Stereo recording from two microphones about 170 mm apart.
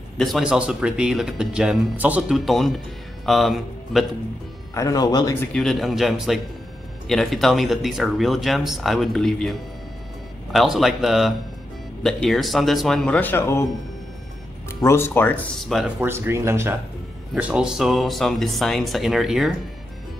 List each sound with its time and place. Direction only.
0.2 s speech: centre (ahead or behind)
4.7 s speech: 20° left (ahead or behind)
5.5 s speech: 5° left (ahead or behind)
14.7 s speech: 15° left (ahead or behind)
15.7 s speech: 5° right (ahead or behind)
16.1 s speech: 15° right (ahead or behind)